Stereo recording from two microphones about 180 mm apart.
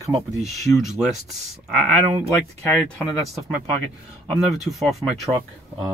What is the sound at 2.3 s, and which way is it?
Speech, 10° left (ahead or behind).